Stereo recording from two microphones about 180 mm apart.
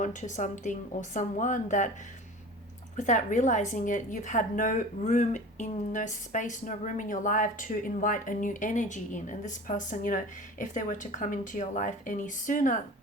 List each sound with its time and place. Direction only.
0.0 s a woman's voice: 45° left (ahead or behind)
2.9 s a woman's voice: 45° left (ahead or behind)